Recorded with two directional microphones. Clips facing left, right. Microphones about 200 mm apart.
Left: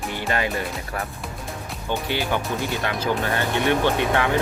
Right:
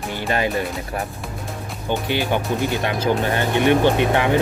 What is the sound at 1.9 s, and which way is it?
Speech, 15° right (ahead or behind).